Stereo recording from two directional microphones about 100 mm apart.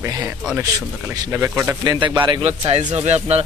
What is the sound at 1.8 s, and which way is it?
Speech, 50° right (ahead or behind).